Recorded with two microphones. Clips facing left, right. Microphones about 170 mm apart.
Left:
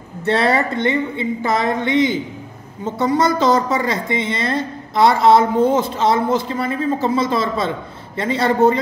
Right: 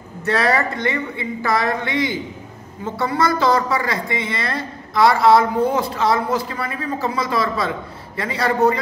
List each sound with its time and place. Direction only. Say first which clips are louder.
0.3 s a woman's voice: left 2 dB; 25° left (ahead or behind)